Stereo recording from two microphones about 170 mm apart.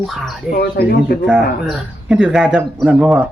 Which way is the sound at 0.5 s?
65° left (ahead or behind).